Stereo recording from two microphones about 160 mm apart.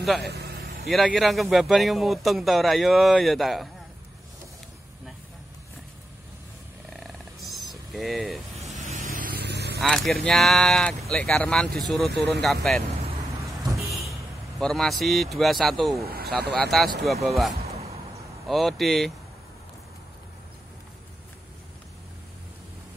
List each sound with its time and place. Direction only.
0.2 s vehicle: 90° right
0.8 s speech: centre (ahead or behind)
7.0 s purr: centre (ahead or behind)
7.7 s a sound: centre (ahead or behind)
8.5 s vehicle: 45° right (ahead or behind); by 9.8 s 90° right
9.8 s speech: centre (ahead or behind)
12.1 s speech: 90° right
13.7 s vehicle: centre (ahead or behind)
14.6 s speech: 5° left (ahead or behind)
16.1 s speech: 75° right (ahead or behind)
16.5 s speech: centre (ahead or behind)